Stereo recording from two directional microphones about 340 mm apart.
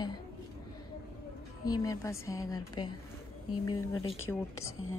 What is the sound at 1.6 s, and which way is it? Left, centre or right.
A woman's voice, centre.